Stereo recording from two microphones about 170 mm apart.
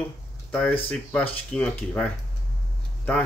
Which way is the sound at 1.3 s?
5° left (ahead or behind).